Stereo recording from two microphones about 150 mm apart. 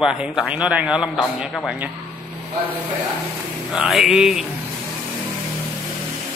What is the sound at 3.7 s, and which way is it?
Speech, 5° right (ahead or behind).